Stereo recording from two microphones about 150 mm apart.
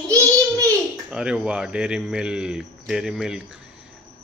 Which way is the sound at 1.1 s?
5° right (ahead or behind).